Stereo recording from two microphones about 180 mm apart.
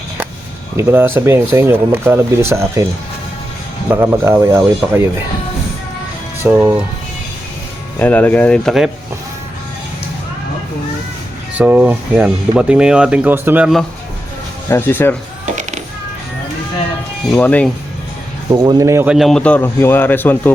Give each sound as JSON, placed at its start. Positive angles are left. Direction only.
{"t": 0.8, "sound": "speech", "side_deg": -15}
{"t": 3.8, "sound": "speech", "side_deg": -10}
{"t": 6.4, "sound": "speech", "side_deg": -10}
{"t": 7.9, "sound": "a man's voice", "side_deg": 10}
{"t": 11.5, "sound": "speech", "side_deg": -10}
{"t": 14.7, "sound": "a man's voice", "side_deg": 10}
{"t": 17.3, "sound": "a man's voice", "side_deg": 10}
{"t": 18.5, "sound": "speech", "side_deg": -20}
{"t": 19.1, "sound": "a man's voice", "side_deg": 0}